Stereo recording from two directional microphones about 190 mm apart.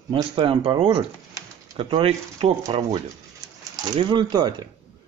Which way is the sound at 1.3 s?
25° right (ahead or behind).